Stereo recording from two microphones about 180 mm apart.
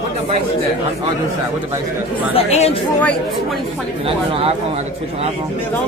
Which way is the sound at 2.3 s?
35° left (ahead or behind).